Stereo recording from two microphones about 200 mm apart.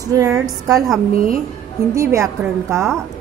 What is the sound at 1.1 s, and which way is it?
Speech, 45° right (ahead or behind).